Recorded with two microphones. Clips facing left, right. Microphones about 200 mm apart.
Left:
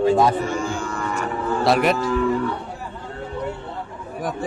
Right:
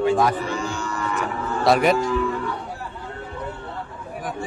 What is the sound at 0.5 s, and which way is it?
Music, 50° left (ahead or behind).